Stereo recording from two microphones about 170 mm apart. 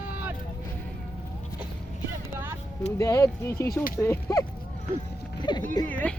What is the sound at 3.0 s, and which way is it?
Speech, 20° left (ahead or behind).